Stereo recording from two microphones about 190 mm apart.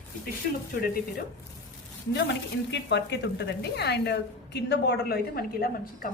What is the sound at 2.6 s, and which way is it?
A woman's voice, 65° left (ahead or behind).